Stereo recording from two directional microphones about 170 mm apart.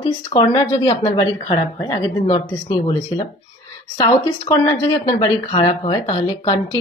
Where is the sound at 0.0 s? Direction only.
25° left (ahead or behind).